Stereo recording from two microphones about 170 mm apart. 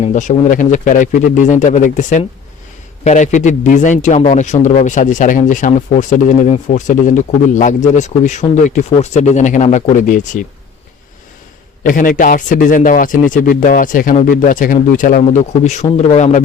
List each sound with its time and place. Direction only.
0.0 s speech: 45° left (ahead or behind)
11.8 s speech: 50° left (ahead or behind)